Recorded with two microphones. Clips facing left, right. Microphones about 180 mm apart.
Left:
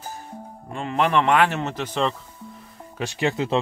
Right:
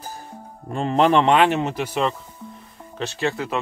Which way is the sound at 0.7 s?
35° right (ahead or behind).